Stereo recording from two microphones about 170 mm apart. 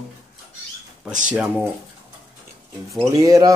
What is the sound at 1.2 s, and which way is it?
Speech, 10° right (ahead or behind).